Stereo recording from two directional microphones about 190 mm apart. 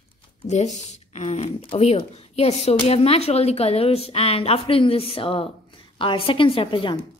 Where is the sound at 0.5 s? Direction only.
35° left (ahead or behind).